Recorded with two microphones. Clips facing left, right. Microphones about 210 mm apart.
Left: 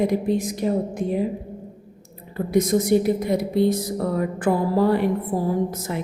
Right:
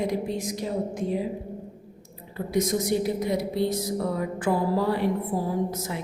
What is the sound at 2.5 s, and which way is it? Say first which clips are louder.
A woman's voice: left 6 dB; 55° left (ahead or behind).